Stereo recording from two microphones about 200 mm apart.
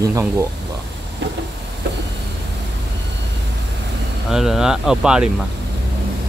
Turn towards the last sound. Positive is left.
turn(degrees=-5)  # may be behind; listen again after turning